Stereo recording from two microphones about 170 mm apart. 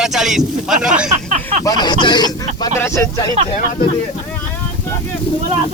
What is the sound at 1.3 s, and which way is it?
Speech, 45° right (ahead or behind).